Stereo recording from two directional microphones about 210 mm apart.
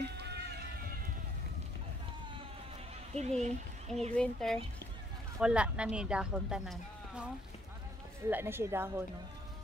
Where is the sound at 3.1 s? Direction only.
30° right (ahead or behind).